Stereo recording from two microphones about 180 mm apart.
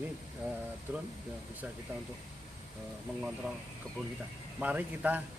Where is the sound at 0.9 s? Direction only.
10° right (ahead or behind).